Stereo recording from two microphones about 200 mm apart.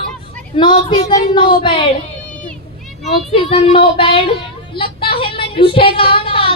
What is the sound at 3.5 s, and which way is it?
Speech, 25° left (ahead or behind).